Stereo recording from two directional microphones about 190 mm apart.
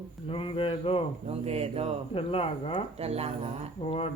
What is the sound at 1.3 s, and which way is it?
Music, 30° right (ahead or behind).